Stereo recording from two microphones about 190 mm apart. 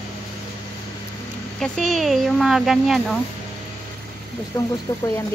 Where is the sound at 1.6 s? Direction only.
5° left (ahead or behind).